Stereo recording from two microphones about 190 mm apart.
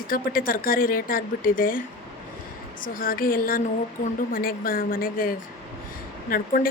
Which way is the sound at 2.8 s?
50° left (ahead or behind).